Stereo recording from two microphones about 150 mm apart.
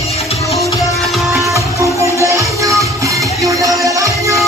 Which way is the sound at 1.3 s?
20° right (ahead or behind).